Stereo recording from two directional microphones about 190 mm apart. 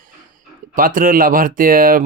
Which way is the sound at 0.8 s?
45° right (ahead or behind).